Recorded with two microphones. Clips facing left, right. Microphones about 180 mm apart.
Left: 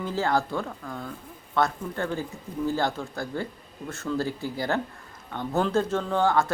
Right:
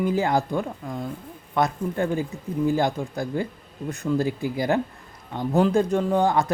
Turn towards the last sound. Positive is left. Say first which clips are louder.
# right 3 dB
turn(degrees=-15)  # may be behind; listen again after turning